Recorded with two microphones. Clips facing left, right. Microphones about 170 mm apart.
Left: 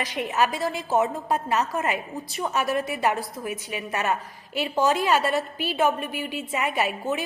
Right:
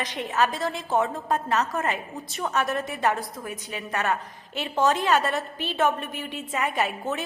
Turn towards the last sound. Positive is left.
turn(degrees=0)  # may be behind; listen again after turning